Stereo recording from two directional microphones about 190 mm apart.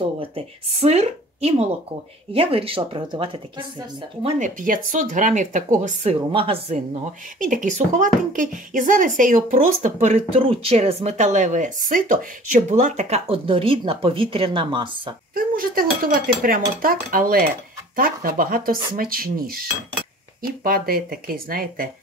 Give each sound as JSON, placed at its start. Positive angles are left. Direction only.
{"t": 0.7, "sound": "speech", "side_deg": -35}
{"t": 4.2, "sound": "speech", "side_deg": -45}
{"t": 6.3, "sound": "speech", "side_deg": -30}
{"t": 7.4, "sound": "speech", "side_deg": -40}
{"t": 15.3, "sound": "speech", "side_deg": -50}